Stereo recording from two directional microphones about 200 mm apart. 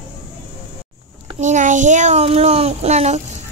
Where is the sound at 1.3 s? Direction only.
40° right (ahead or behind).